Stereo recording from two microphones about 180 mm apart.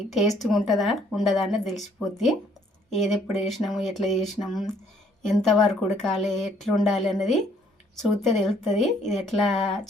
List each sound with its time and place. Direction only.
0.1 s a woman's voice: centre (ahead or behind)